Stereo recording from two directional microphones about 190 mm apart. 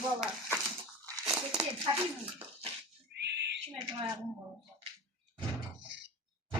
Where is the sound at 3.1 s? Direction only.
65° right (ahead or behind).